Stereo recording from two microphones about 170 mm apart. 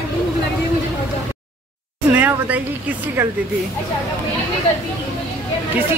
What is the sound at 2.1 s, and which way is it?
A woman's voice, 10° right (ahead or behind).